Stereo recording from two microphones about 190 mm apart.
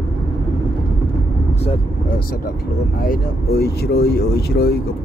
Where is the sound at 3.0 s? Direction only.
50° left (ahead or behind).